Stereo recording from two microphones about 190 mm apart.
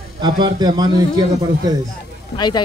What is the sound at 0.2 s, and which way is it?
Speech, 20° right (ahead or behind).